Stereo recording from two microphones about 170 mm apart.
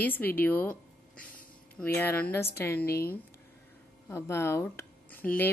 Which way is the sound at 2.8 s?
65° left (ahead or behind).